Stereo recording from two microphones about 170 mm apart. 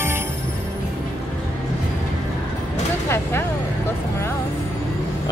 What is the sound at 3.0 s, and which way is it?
Vehicle, 15° left (ahead or behind).